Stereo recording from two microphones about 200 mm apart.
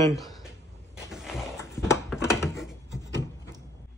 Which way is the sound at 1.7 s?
15° left (ahead or behind).